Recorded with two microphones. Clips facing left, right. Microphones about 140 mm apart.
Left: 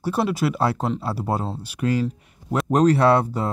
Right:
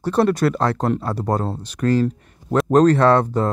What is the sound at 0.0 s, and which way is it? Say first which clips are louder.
Speech: right 5 dB; 5° left (ahead or behind).